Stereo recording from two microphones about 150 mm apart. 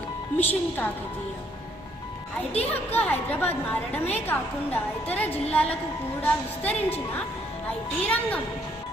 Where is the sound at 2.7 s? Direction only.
10° left (ahead or behind).